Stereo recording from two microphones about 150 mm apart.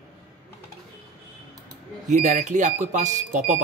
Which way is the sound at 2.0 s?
50° right (ahead or behind).